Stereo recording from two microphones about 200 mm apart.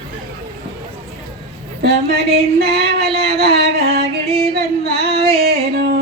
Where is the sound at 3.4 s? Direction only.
50° right (ahead or behind).